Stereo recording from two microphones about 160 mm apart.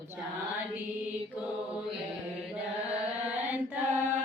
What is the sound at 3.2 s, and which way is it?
Chant, 10° right (ahead or behind).